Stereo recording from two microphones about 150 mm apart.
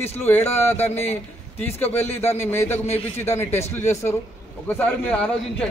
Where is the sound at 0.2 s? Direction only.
15° left (ahead or behind).